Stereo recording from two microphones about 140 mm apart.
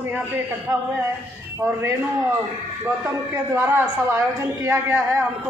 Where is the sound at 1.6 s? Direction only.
15° right (ahead or behind).